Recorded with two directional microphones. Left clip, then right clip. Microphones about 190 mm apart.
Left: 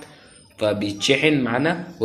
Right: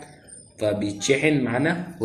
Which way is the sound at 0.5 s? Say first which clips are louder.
Left 2 dB; 60° left (ahead or behind).